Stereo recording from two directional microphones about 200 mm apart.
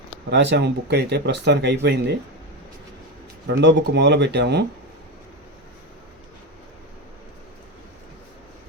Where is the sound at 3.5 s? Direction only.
60° right (ahead or behind).